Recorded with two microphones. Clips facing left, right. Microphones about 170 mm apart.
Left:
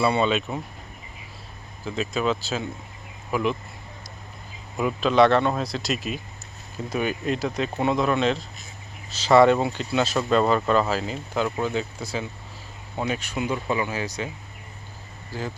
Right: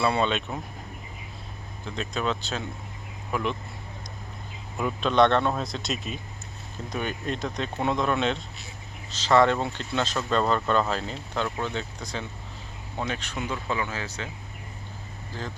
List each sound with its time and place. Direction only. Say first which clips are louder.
0.0 s speech: left 3 dB; 5° left (ahead or behind)
1.8 s speech: left 4 dB; 5° left (ahead or behind)
4.8 s speech: left 3 dB; 5° left (ahead or behind)
9.0 s speech: left 4 dB; 10° left (ahead or behind)
15.3 s speech: left 4 dB; 10° left (ahead or behind)